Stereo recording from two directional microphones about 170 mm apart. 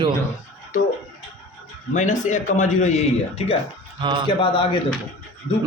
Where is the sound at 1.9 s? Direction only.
45° left (ahead or behind).